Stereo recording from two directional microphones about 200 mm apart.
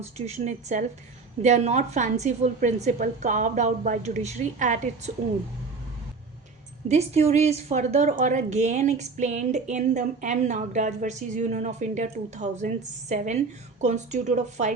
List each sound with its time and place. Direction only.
0.0 s a woman's voice: 35° right (ahead or behind)
6.8 s a woman's voice: 35° right (ahead or behind)